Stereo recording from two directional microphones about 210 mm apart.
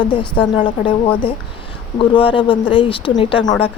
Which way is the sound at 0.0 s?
25° left (ahead or behind).